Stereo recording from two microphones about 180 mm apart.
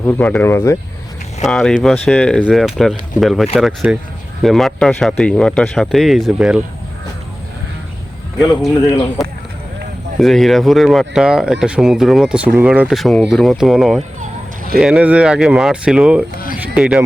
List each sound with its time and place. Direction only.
0.0 s speech: 10° left (ahead or behind)
1.5 s speech: 5° left (ahead or behind)
9.2 s speech: centre (ahead or behind)
14.2 s a sound: 50° right (ahead or behind)
14.8 s speech: 5° right (ahead or behind)